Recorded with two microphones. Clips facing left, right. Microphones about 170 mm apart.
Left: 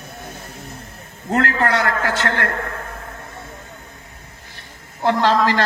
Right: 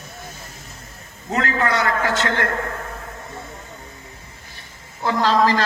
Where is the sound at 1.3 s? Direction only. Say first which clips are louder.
Left 2 dB; 65° left (ahead or behind).